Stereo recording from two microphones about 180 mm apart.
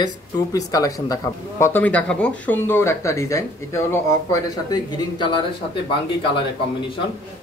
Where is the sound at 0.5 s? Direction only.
20° left (ahead or behind).